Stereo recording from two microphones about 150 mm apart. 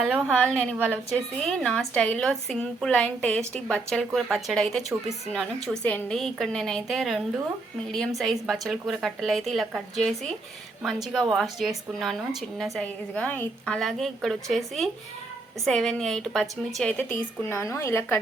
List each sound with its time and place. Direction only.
0.0 s a woman's voice: centre (ahead or behind)
17.5 s a woman's voice: 20° left (ahead or behind)